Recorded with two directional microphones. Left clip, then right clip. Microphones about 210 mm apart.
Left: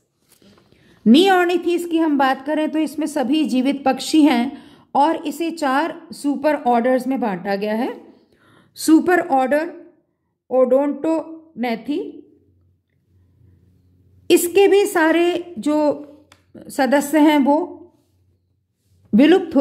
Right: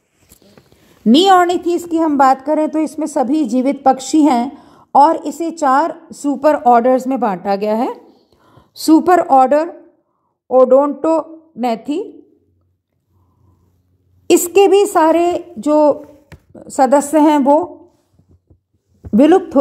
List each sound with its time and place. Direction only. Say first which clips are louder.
1.1 s a woman's voice: right 5 dB; 20° right (ahead or behind)
2.0 s a woman's voice: right 9 dB; centre (ahead or behind)
2.7 s a woman's voice: right 4 dB; 10° right (ahead or behind)
8.1 s a sound: right 2 dB; 15° right (ahead or behind)
10.5 s a woman's voice: right 6 dB; 15° right (ahead or behind)
14.5 s a woman's voice: right 5 dB; 20° right (ahead or behind)
17.1 s a woman's voice: right 4 dB; centre (ahead or behind)
19.1 s a woman's voice: right 4 dB; 10° right (ahead or behind)